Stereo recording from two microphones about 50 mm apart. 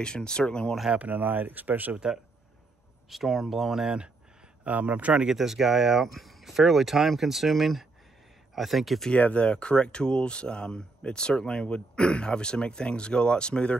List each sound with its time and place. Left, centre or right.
0.0 s speech: centre
0.9 s speech: right
3.1 s speech: centre
4.6 s a man's voice: right
5.2 s speech: centre
9.1 s speech: left